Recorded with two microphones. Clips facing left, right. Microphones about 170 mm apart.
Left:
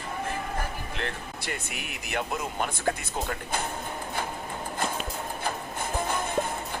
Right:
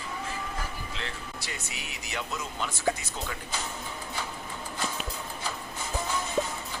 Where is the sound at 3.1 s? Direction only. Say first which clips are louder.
Left 5 dB; 55° left (ahead or behind).